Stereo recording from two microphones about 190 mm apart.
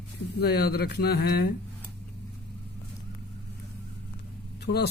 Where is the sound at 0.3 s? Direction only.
55° left (ahead or behind).